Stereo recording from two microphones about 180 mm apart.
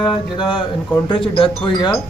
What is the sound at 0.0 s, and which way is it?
Speech, 25° left (ahead or behind).